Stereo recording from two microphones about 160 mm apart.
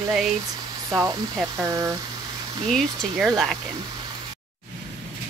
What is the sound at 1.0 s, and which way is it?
Speech, 20° right (ahead or behind).